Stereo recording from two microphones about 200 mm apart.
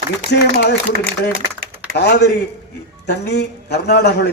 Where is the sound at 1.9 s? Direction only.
55° left (ahead or behind).